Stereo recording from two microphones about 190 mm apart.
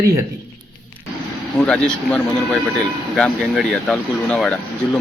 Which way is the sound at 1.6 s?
5° left (ahead or behind).